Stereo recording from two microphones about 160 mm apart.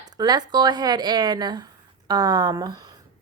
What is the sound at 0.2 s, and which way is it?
A woman's voice, 25° right (ahead or behind).